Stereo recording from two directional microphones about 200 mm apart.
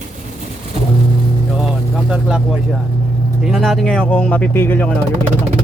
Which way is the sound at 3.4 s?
Centre (ahead or behind).